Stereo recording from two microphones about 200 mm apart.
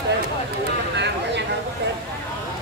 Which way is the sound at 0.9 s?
60° right (ahead or behind).